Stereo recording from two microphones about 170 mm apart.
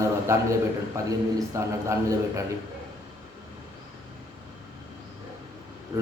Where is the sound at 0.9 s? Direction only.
15° right (ahead or behind).